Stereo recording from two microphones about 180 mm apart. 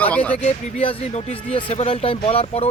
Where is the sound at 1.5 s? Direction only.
35° left (ahead or behind).